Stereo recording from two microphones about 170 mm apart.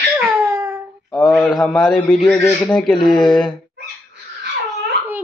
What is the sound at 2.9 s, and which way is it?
Speech, 25° left (ahead or behind).